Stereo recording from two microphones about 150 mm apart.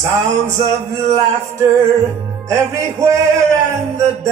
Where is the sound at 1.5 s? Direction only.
20° right (ahead or behind).